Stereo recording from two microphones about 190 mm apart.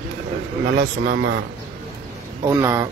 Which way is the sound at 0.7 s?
65° right (ahead or behind).